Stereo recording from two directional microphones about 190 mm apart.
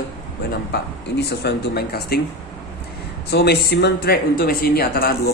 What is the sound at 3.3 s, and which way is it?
Speech, 60° left (ahead or behind).